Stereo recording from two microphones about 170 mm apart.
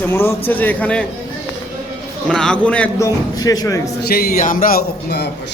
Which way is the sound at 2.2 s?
5° left (ahead or behind).